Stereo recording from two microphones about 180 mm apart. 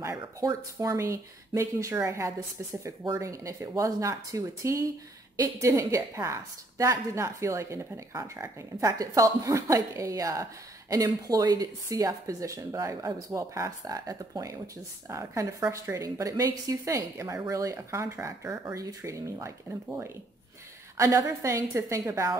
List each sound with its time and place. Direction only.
0.0 s a woman's voice: 20° right (ahead or behind)